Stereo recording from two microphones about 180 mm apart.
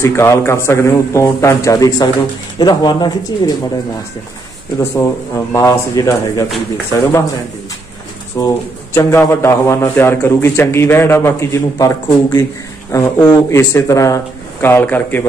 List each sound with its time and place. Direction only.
0.0 s a man's voice: 15° left (ahead or behind)
4.7 s a man's voice: 15° left (ahead or behind)
8.4 s a man's voice: 20° left (ahead or behind)